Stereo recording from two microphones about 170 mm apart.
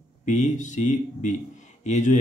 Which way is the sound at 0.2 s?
45° left (ahead or behind).